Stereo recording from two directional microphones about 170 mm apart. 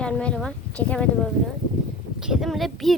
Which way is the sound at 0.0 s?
5° left (ahead or behind).